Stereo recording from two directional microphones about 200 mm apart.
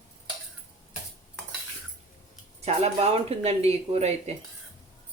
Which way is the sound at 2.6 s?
30° right (ahead or behind).